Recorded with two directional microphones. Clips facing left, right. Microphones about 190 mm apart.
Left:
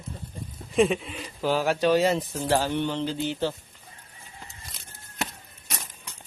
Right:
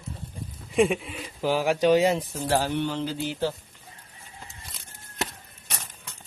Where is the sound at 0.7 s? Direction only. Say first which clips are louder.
Even; 10° right (ahead or behind).